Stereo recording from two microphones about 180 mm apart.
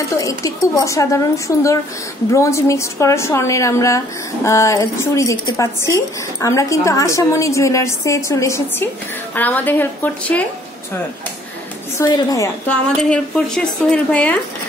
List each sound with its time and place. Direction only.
0.1 s a woman's voice: 20° left (ahead or behind)
12.0 s a woman's voice: 20° left (ahead or behind)
12.6 s a woman's voice: 5° left (ahead or behind)